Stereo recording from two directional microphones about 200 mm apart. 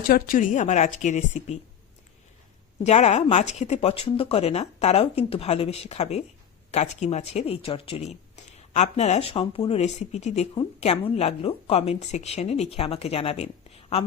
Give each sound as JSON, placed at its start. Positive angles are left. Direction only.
{"t": 0.1, "sound": "speech", "side_deg": 40}
{"t": 2.8, "sound": "speech", "side_deg": 35}